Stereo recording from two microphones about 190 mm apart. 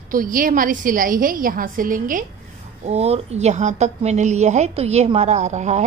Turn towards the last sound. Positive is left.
turn(degrees=-40)  # may be behind; listen again after turning